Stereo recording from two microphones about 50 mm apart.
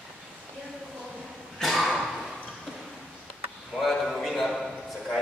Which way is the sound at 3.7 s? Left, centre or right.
Centre.